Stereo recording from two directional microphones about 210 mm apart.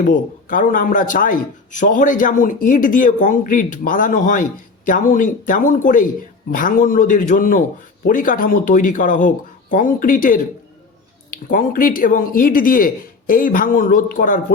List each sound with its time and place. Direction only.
0.1 s a man's voice: 40° left (ahead or behind)